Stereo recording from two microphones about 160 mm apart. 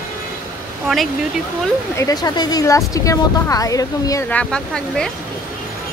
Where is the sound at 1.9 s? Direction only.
25° left (ahead or behind).